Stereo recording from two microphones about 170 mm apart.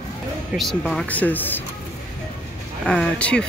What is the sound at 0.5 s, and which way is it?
Speech, centre (ahead or behind).